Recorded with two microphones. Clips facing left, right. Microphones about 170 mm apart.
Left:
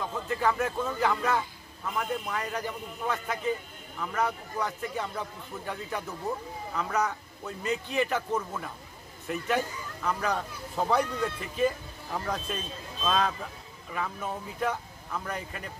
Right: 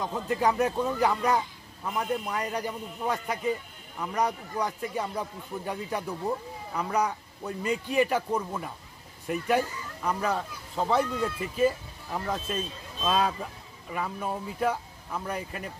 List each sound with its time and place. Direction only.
0.0 s a man's voice: 15° right (ahead or behind)
10.0 s a man's voice: 5° right (ahead or behind)